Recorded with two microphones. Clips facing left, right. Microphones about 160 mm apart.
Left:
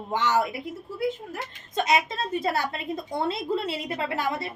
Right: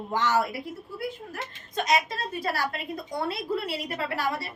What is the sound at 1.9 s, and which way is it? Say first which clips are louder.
A woman's voice: left 1 dB; 25° left (ahead or behind).